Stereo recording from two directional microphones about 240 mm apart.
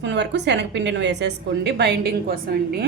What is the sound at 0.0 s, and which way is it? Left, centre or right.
A woman's voice, right.